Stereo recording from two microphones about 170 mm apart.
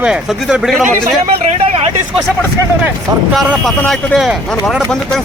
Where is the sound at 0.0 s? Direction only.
5° right (ahead or behind).